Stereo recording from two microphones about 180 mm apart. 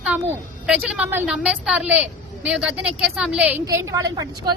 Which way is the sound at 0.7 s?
5° right (ahead or behind).